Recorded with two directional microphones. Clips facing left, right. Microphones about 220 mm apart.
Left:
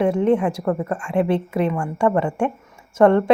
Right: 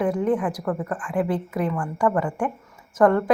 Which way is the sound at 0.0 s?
25° left (ahead or behind).